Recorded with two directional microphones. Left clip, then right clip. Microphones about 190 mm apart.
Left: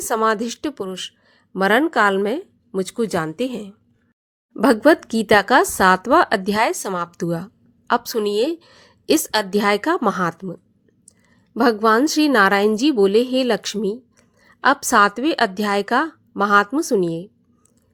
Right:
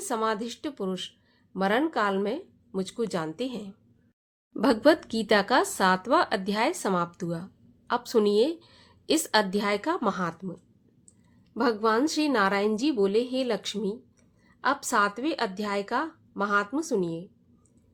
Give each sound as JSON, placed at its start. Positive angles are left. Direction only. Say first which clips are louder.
{"t": 0.1, "sound": "a woman's voice", "louder": "left 9 dB", "side_deg": 40}